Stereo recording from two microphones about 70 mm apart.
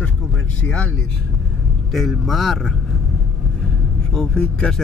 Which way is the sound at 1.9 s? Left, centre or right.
Centre.